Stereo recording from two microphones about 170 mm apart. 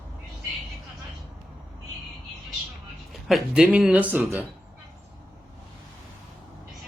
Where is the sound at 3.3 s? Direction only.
5° right (ahead or behind).